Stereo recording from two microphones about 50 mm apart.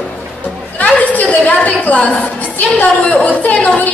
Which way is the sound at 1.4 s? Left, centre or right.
Left.